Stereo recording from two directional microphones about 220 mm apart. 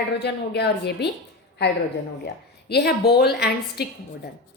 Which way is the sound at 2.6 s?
50° left (ahead or behind).